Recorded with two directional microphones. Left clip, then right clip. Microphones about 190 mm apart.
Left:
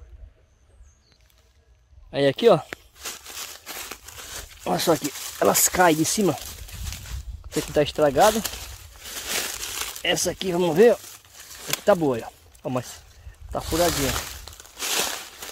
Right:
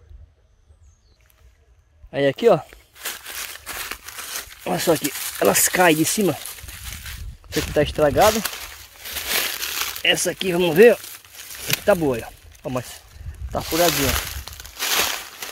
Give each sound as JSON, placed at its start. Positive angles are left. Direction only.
{"t": 2.0, "sound": "speech", "side_deg": 0}
{"t": 3.0, "sound": "a sound", "side_deg": 0}
{"t": 4.1, "sound": "crumpling", "side_deg": -25}
{"t": 4.6, "sound": "speech", "side_deg": -5}
{"t": 7.7, "sound": "speech", "side_deg": 0}
{"t": 9.1, "sound": "crumpling", "side_deg": 0}
{"t": 9.7, "sound": "crumpling", "side_deg": -15}
{"t": 10.0, "sound": "speech", "side_deg": 0}
{"t": 11.3, "sound": "a sound", "side_deg": -25}
{"t": 11.8, "sound": "speech", "side_deg": 0}
{"t": 13.8, "sound": "a sound", "side_deg": -30}